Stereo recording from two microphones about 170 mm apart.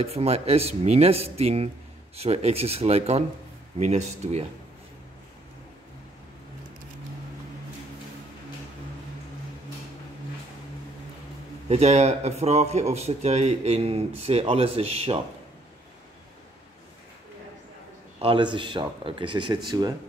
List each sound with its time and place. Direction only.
0.0 s a man's voice: 35° right (ahead or behind)
11.7 s a man's voice: 40° right (ahead or behind)
18.2 s a man's voice: 30° right (ahead or behind)